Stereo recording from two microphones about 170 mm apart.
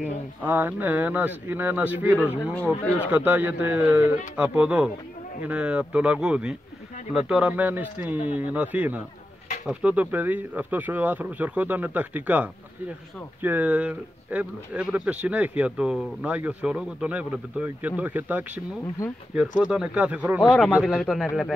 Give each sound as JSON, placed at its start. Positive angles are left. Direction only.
{"t": 0.0, "sound": "speech", "side_deg": -10}
{"t": 2.5, "sound": "speech", "side_deg": 10}
{"t": 3.1, "sound": "speech", "side_deg": -10}
{"t": 19.6, "sound": "speech", "side_deg": -5}
{"t": 20.4, "sound": "speech", "side_deg": 5}